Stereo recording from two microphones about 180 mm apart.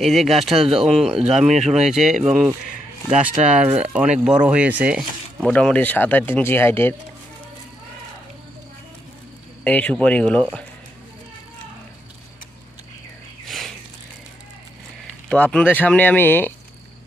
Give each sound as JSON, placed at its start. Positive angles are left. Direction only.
{"t": 0.0, "sound": "speech", "side_deg": 0}
{"t": 1.5, "sound": "speech", "side_deg": -40}
{"t": 2.2, "sound": "speech", "side_deg": -5}
{"t": 5.5, "sound": "speech", "side_deg": 5}
{"t": 9.7, "sound": "speech", "side_deg": 10}
{"t": 15.2, "sound": "speech", "side_deg": 5}